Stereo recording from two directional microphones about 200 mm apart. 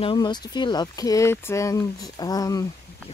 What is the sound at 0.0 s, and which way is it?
Speech, 25° left (ahead or behind).